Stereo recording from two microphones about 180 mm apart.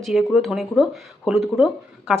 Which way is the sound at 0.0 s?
Centre (ahead or behind).